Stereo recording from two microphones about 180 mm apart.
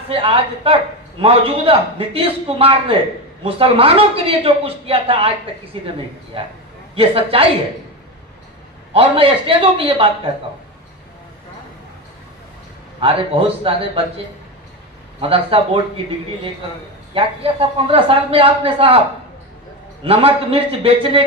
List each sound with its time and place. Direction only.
0.1 s speech: 30° right (ahead or behind)
8.9 s speech: 30° right (ahead or behind)
13.0 s speech: 30° right (ahead or behind)
15.2 s speech: 30° right (ahead or behind)
20.1 s speech: 30° right (ahead or behind)